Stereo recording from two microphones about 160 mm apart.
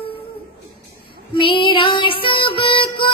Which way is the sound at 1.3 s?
30° left (ahead or behind).